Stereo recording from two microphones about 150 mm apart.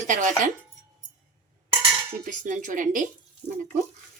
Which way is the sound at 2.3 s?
60° right (ahead or behind).